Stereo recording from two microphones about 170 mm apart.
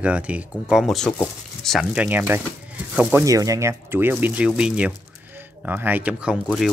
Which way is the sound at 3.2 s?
20° right (ahead or behind).